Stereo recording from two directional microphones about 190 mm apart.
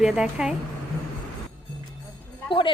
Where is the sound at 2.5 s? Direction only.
25° left (ahead or behind).